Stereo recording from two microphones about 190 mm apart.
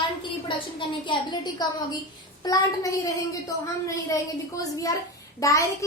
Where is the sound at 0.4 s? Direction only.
25° left (ahead or behind).